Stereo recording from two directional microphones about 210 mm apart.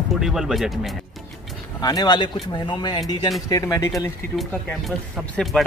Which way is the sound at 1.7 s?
20° left (ahead or behind).